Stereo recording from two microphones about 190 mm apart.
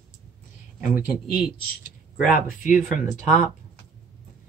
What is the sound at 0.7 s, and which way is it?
Speech, 5° right (ahead or behind).